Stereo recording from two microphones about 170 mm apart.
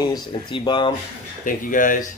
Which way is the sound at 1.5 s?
50° left (ahead or behind).